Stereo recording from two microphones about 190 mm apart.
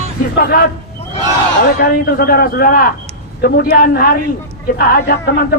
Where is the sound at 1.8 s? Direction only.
50° left (ahead or behind).